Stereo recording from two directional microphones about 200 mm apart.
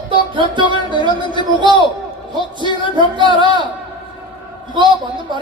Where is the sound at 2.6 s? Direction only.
25° right (ahead or behind).